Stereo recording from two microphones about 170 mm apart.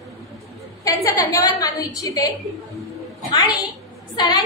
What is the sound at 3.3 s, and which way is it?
A woman's voice, 20° left (ahead or behind).